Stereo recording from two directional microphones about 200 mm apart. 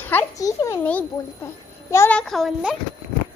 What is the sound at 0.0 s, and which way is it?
A child's voice, 10° left (ahead or behind).